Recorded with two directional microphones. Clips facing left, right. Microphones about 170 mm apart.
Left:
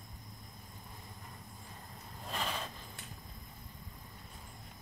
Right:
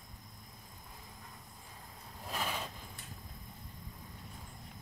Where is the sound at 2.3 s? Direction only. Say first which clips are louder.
Even; 5° right (ahead or behind).